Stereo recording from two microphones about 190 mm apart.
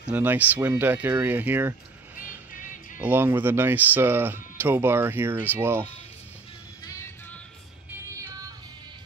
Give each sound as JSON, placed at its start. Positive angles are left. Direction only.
{"t": 0.0, "sound": "speech", "side_deg": -10}
{"t": 3.0, "sound": "speech", "side_deg": -10}
{"t": 6.8, "sound": "music", "side_deg": 15}